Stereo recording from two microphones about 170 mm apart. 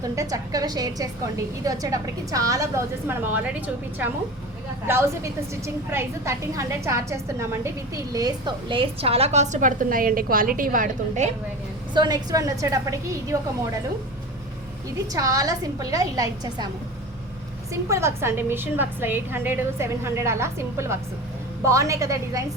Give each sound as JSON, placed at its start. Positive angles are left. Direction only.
{"t": 0.0, "sound": "a woman's voice", "side_deg": -20}
{"t": 4.9, "sound": "a woman's voice", "side_deg": -15}
{"t": 11.9, "sound": "a woman's voice", "side_deg": -25}
{"t": 15.1, "sound": "a woman's voice", "side_deg": -20}
{"t": 17.7, "sound": "a woman's voice", "side_deg": -15}